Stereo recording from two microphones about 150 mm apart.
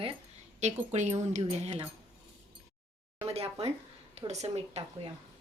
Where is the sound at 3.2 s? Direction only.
45° right (ahead or behind).